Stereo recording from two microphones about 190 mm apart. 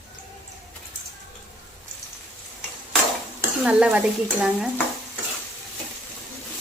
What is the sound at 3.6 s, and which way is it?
Speech, 5° right (ahead or behind).